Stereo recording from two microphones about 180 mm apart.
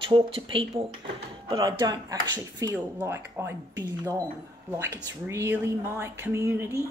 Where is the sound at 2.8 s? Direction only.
10° right (ahead or behind).